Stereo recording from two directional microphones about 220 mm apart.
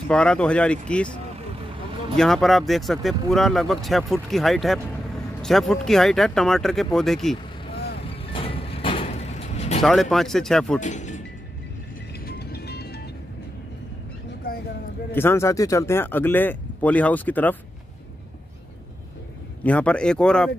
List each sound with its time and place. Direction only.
0.1 s speech: 5° left (ahead or behind)
2.1 s speech: centre (ahead or behind)
8.1 s sliding door: 25° left (ahead or behind)
9.8 s speech: centre (ahead or behind)
10.8 s speech: 35° left (ahead or behind)
12.3 s music: 45° left (ahead or behind)
15.1 s speech: 10° left (ahead or behind)
19.6 s speech: 5° left (ahead or behind)